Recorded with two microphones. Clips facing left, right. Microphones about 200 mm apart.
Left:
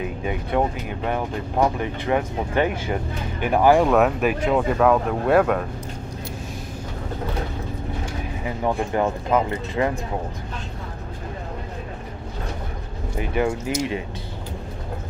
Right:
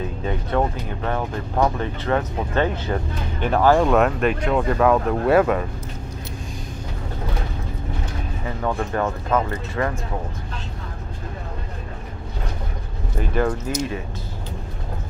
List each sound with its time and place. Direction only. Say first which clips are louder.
0.0 s speech: even; 15° left (ahead or behind)
8.0 s speech: left 1 dB; 15° left (ahead or behind)
13.2 s speech: right 1 dB; 10° left (ahead or behind)